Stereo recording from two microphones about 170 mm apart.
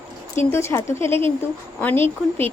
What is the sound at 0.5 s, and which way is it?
Speech, 15° left (ahead or behind).